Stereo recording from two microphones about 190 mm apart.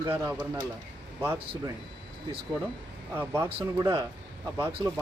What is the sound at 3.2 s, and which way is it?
Speech, 15° right (ahead or behind).